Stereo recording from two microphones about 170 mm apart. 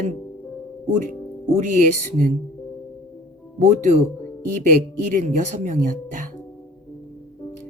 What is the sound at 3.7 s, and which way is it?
Speech, 45° right (ahead or behind).